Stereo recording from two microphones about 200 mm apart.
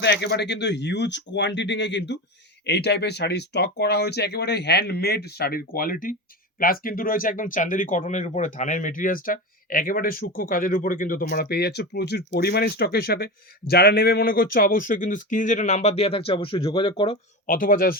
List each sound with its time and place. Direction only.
0.0 s speech: 60° left (ahead or behind); by 17.2 s 25° left (ahead or behind)
17.4 s speech: 45° left (ahead or behind)